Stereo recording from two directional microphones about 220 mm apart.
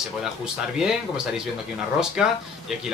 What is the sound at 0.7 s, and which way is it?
Speech, 5° right (ahead or behind).